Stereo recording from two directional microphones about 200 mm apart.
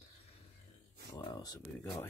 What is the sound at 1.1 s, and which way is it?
Speech, 20° left (ahead or behind).